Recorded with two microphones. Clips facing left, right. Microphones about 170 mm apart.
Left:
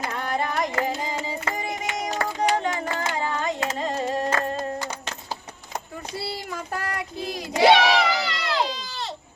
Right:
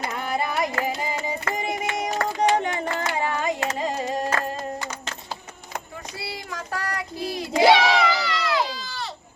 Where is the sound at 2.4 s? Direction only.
20° right (ahead or behind).